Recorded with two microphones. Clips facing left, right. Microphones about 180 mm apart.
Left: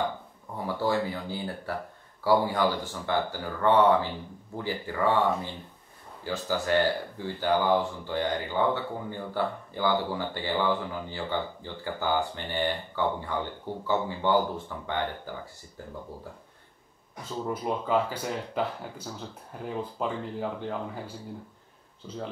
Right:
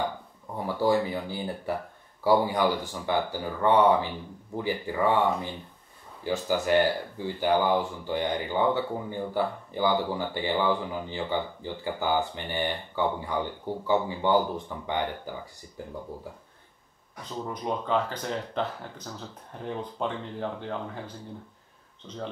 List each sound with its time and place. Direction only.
0.6 s speech: 15° right (ahead or behind)
17.2 s speech: 5° left (ahead or behind)